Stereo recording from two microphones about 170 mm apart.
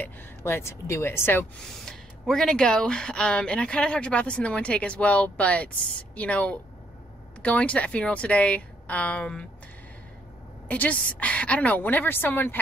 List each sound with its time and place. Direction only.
0.0 s a woman's voice: 15° left (ahead or behind)
1.6 s a woman's voice: 5° left (ahead or behind)
10.7 s a woman's voice: 10° left (ahead or behind)